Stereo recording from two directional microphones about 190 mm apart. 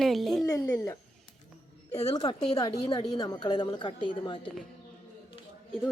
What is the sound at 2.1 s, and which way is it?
A woman's voice, 20° left (ahead or behind).